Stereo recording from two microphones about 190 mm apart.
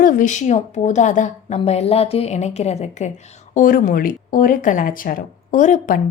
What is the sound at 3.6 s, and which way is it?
Speech, 45° left (ahead or behind).